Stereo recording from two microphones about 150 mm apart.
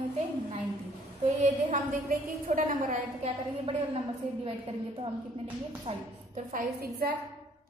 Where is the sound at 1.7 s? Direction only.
65° right (ahead or behind).